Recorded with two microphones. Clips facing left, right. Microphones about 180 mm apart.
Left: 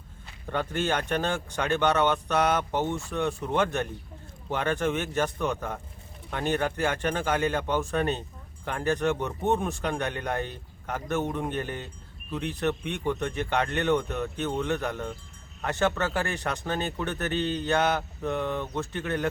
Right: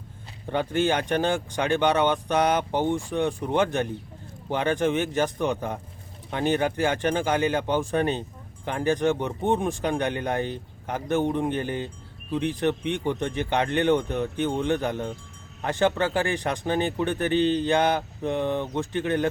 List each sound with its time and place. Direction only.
0.4 s speech: 15° right (ahead or behind)